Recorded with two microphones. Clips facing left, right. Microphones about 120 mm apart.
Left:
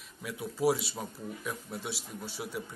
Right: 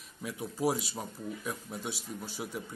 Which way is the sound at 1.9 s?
45° right (ahead or behind).